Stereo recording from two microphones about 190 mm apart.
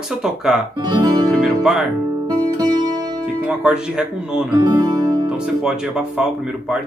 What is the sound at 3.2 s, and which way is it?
Speech, 5° right (ahead or behind).